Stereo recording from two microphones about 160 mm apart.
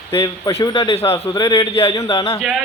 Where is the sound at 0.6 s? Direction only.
30° left (ahead or behind).